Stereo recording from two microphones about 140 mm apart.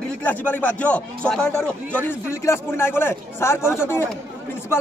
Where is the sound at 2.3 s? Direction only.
20° left (ahead or behind).